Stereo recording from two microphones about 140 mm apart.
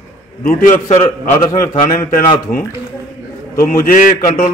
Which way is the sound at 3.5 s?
90° left.